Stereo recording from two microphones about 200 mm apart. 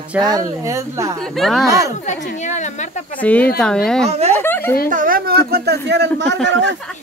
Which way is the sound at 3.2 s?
10° left (ahead or behind).